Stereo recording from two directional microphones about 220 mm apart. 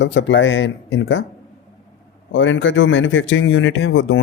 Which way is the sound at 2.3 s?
60° left (ahead or behind).